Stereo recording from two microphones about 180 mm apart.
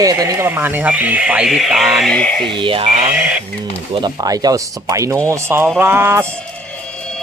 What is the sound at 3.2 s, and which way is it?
Speech, 5° right (ahead or behind).